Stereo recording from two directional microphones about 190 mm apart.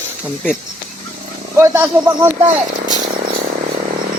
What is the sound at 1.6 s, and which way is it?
Speech, 15° right (ahead or behind).